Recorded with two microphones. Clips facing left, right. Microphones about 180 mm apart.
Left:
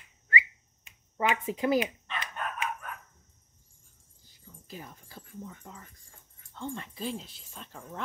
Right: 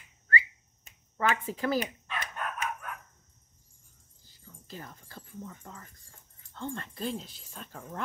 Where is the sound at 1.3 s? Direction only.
20° left (ahead or behind).